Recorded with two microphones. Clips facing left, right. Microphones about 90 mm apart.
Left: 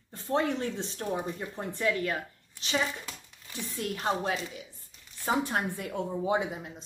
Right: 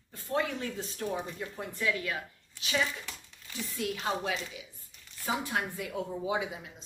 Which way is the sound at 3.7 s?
45° left (ahead or behind).